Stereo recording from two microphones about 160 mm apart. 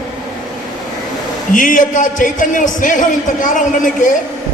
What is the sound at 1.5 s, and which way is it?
A man's voice, 55° left (ahead or behind).